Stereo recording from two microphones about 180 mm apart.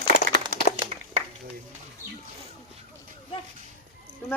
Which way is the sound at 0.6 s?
35° left (ahead or behind).